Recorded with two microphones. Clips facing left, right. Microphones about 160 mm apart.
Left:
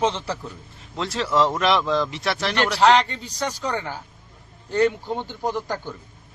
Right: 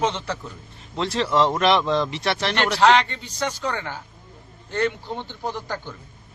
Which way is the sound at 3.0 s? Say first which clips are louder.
Even; 35° left (ahead or behind).